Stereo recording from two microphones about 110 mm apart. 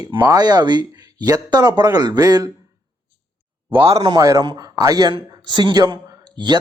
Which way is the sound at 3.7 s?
55° right (ahead or behind).